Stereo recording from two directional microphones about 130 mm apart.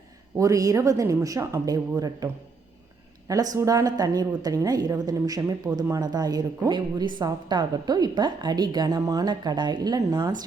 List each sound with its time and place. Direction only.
0.3 s a woman's voice: 25° right (ahead or behind)